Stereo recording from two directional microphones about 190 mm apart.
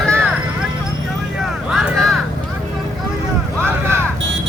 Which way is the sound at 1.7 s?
Centre (ahead or behind).